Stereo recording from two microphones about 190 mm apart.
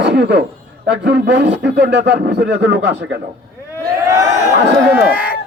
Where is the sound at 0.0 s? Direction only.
60° right (ahead or behind).